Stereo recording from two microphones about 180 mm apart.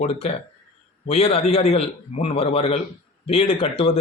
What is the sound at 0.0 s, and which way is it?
Speech, 35° left (ahead or behind).